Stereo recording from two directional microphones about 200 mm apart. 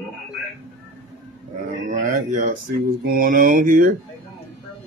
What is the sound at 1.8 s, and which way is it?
Speech, 40° right (ahead or behind).